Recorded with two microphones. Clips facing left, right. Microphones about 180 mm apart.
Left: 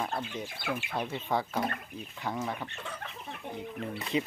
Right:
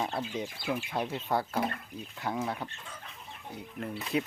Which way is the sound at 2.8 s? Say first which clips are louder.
Left 6 dB; 70° left (ahead or behind).